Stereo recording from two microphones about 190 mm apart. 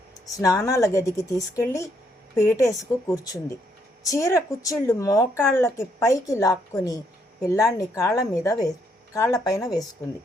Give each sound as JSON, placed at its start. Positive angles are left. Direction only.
{"t": 0.3, "sound": "speech", "side_deg": 15}